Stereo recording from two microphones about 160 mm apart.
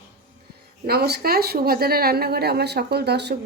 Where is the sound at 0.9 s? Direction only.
85° right.